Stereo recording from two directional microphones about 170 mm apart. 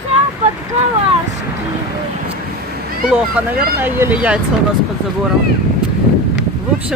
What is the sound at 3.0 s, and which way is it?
Speech, 10° right (ahead or behind).